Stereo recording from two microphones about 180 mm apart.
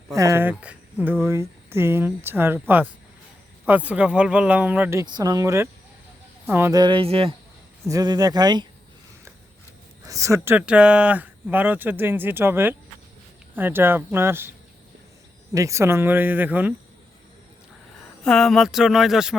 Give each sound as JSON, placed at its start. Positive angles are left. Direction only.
{"t": 0.1, "sound": "speech", "side_deg": -15}
{"t": 7.9, "sound": "speech", "side_deg": -20}
{"t": 10.1, "sound": "speech", "side_deg": -15}
{"t": 15.5, "sound": "speech", "side_deg": -15}
{"t": 18.2, "sound": "speech", "side_deg": 5}